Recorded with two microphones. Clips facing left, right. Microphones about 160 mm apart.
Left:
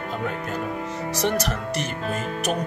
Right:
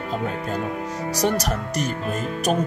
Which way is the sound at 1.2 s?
40° right (ahead or behind).